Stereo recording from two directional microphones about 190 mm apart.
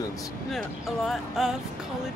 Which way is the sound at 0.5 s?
Centre (ahead or behind).